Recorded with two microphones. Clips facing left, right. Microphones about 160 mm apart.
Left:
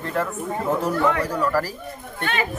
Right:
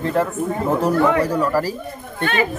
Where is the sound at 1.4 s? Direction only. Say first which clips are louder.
Right 3 dB; 15° right (ahead or behind).